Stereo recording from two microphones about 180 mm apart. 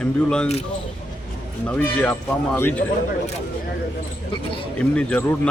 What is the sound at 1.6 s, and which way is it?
Speech, 10° left (ahead or behind).